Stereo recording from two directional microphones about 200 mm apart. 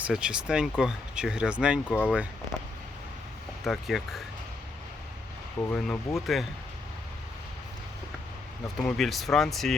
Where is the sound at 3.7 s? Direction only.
Centre (ahead or behind).